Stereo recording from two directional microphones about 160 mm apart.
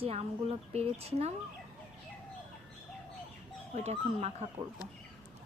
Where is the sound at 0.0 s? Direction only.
40° right (ahead or behind).